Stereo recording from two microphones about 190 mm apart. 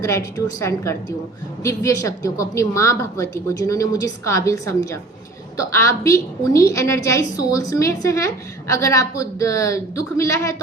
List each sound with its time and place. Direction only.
0.0 s a woman's voice: 15° left (ahead or behind)